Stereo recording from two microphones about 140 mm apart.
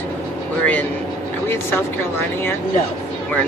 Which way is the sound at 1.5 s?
15° left (ahead or behind).